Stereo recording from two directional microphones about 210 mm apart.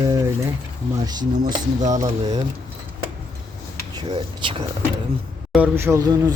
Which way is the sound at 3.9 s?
20° right (ahead or behind).